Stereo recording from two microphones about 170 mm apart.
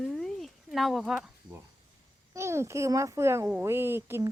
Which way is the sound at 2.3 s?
15° right (ahead or behind).